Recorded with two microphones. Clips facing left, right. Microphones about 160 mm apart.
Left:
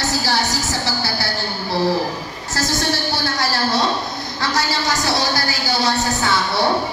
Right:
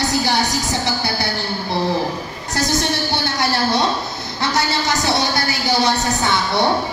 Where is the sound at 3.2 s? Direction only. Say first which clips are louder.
Right 2 dB; 20° right (ahead or behind).